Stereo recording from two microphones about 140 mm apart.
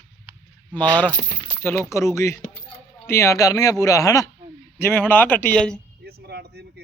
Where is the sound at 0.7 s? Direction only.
10° left (ahead or behind).